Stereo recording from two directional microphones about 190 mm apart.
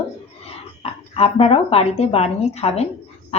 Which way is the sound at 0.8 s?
30° left (ahead or behind).